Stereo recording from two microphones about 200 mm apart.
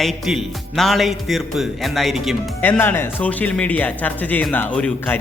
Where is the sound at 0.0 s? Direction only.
Centre (ahead or behind).